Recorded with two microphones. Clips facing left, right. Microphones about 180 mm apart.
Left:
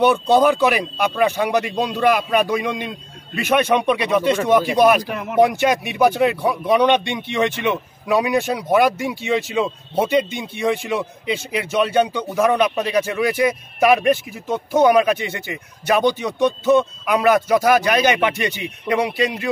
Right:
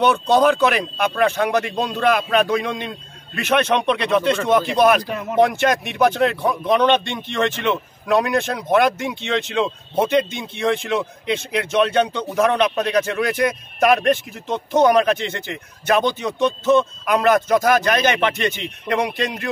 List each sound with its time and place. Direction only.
0.0 s speech: 10° left (ahead or behind)